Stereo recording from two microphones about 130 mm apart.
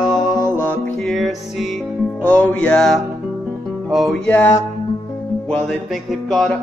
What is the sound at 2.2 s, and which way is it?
Music, 10° left (ahead or behind).